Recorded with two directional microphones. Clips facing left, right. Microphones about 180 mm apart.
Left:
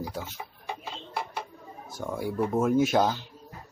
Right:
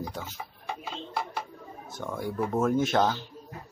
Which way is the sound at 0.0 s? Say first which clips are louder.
Left 1 dB; 5° left (ahead or behind).